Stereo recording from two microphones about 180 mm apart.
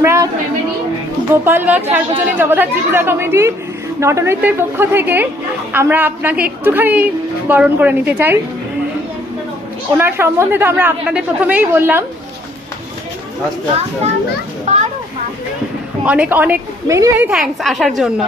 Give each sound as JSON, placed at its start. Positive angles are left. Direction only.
{"t": 0.0, "sound": "a sound", "side_deg": -15}
{"t": 1.4, "sound": "a woman's voice", "side_deg": -10}
{"t": 9.9, "sound": "a woman's voice", "side_deg": -10}
{"t": 14.7, "sound": "a sound", "side_deg": -40}
{"t": 16.0, "sound": "a woman's voice", "side_deg": -5}
{"t": 17.3, "sound": "a woman's voice", "side_deg": 0}